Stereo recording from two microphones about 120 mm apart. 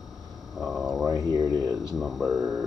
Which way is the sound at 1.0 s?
30° right (ahead or behind).